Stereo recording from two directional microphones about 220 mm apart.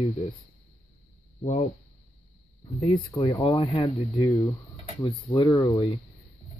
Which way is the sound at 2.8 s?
15° left (ahead or behind).